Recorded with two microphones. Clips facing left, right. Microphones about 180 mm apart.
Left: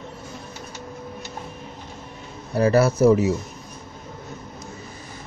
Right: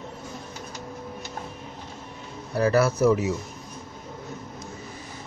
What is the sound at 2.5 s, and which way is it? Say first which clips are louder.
Speech: left 3 dB; 25° left (ahead or behind).